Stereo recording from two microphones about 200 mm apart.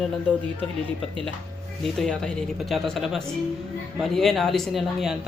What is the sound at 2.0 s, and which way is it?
Speech, 5° left (ahead or behind).